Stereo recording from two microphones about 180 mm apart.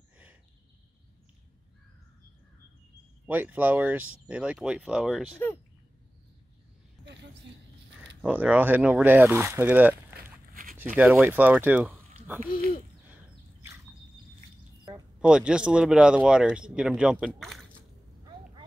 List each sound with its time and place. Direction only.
3.3 s speech: 10° right (ahead or behind)
8.2 s speech: 10° right (ahead or behind)
10.5 s a sound: 50° right (ahead or behind)
11.0 s speech: 10° right (ahead or behind)
12.4 s speech: 50° left (ahead or behind)
13.1 s a sound: 15° right (ahead or behind)
15.1 s speech: 5° right (ahead or behind)